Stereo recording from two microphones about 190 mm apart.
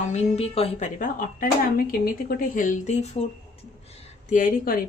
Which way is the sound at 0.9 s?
45° left (ahead or behind).